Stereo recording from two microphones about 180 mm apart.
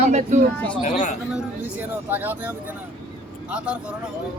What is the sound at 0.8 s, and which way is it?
Speech, 45° left (ahead or behind).